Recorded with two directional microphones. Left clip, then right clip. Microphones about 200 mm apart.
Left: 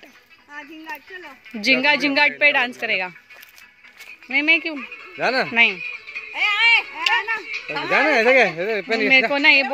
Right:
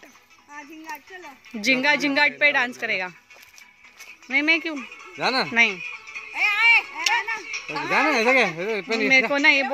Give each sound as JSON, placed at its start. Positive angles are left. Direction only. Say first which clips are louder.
{"t": 0.5, "sound": "speech", "louder": "left 3 dB", "side_deg": -20}
{"t": 1.5, "sound": "a woman's voice", "louder": "left 3 dB", "side_deg": -5}
{"t": 4.3, "sound": "speech", "louder": "left 3 dB", "side_deg": -5}
{"t": 4.9, "sound": "speech", "louder": "left 3 dB", "side_deg": -45}
{"t": 5.5, "sound": "a woman's voice", "louder": "left 3 dB", "side_deg": -5}
{"t": 5.8, "sound": "music", "louder": "left 4 dB", "side_deg": -50}
{"t": 6.3, "sound": "music", "louder": "left 1 dB", "side_deg": 0}
{"t": 7.0, "sound": "a sound", "louder": "left 3 dB", "side_deg": -10}
{"t": 7.4, "sound": "a sound", "louder": "left 3 dB", "side_deg": -45}
{"t": 7.9, "sound": "speech", "louder": "left 4 dB", "side_deg": -55}
{"t": 9.3, "sound": "a woman's voice", "louder": "left 3 dB", "side_deg": -5}